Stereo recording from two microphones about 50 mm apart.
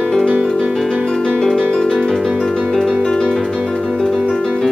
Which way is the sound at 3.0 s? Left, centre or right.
Centre.